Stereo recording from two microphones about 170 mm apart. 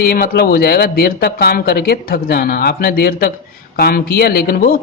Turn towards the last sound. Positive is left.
turn(degrees=60)  # may be behind; listen again after turning